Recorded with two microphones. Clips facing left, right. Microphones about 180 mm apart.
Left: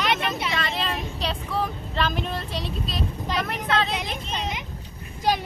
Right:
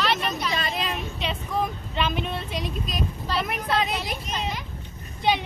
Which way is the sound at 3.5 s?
10° right (ahead or behind).